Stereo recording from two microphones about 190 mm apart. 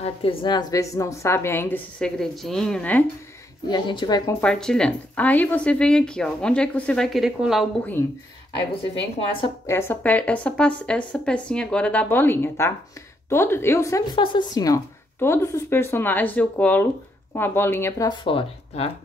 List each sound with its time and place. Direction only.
0.0 s a woman's voice: 30° left (ahead or behind); by 3.1 s 10° left (ahead or behind)
3.6 s speech: 25° left (ahead or behind)
4.4 s a woman's voice: 5° left (ahead or behind)
9.7 s a woman's voice: 15° left (ahead or behind)